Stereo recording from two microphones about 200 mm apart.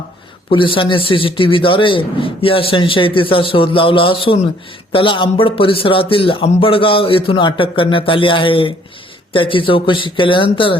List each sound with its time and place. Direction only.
0.5 s a man's voice: 25° left (ahead or behind)